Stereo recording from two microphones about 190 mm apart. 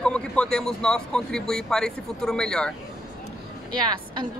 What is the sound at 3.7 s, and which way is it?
Speech, 20° right (ahead or behind).